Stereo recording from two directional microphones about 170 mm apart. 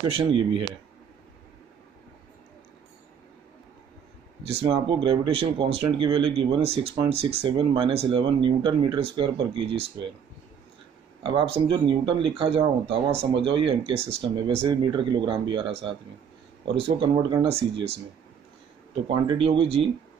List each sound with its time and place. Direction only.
0.0 s speech: 30° right (ahead or behind)
4.5 s speech: 35° right (ahead or behind)
11.2 s speech: 35° right (ahead or behind)
19.0 s speech: 30° right (ahead or behind)